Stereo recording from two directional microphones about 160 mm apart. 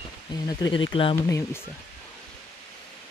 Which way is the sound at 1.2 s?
20° left (ahead or behind).